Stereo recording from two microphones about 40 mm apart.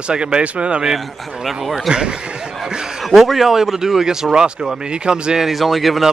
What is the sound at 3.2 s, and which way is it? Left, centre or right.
Speech, centre.